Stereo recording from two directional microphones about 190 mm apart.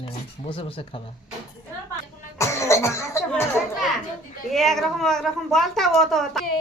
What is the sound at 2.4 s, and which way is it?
Speech, 15° left (ahead or behind).